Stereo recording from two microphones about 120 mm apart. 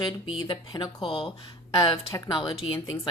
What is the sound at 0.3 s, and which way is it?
A woman's voice, 40° left (ahead or behind).